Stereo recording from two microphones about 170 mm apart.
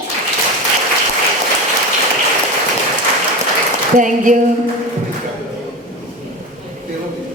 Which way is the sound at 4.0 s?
50° right (ahead or behind).